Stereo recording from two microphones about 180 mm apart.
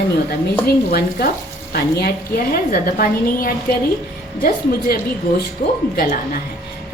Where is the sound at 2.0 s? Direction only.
55° left (ahead or behind).